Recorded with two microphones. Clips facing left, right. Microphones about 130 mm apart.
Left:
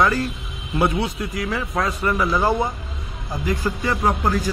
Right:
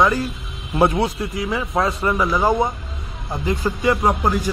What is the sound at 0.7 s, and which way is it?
Speech, 35° right (ahead or behind).